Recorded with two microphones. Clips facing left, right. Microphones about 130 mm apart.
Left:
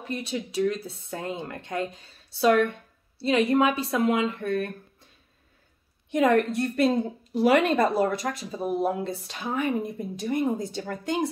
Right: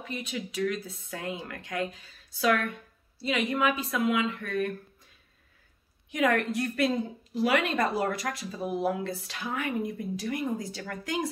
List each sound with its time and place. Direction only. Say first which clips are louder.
0.1 s speech: left 5 dB; 30° left (ahead or behind)
6.1 s speech: left 5 dB; 30° left (ahead or behind)
8.0 s speech: left 5 dB; 25° left (ahead or behind)